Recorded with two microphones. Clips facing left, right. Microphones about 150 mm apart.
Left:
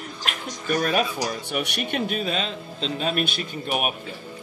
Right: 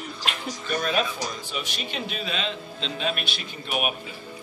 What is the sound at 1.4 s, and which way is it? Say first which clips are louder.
Speech: left 6 dB; 65° left (ahead or behind).